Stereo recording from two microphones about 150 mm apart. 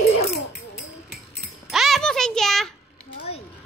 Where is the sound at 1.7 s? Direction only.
Centre (ahead or behind).